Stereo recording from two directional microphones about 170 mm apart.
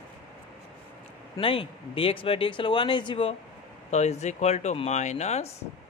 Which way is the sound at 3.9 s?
40° left (ahead or behind).